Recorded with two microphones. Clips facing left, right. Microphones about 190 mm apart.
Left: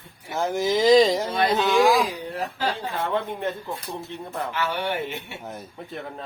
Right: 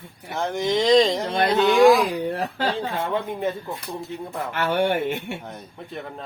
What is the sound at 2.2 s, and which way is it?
Speech, 60° right (ahead or behind).